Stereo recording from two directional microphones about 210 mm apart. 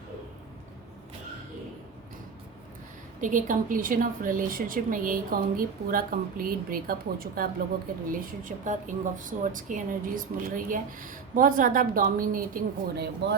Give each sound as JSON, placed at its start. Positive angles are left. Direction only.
{"t": 3.2, "sound": "speech", "side_deg": -35}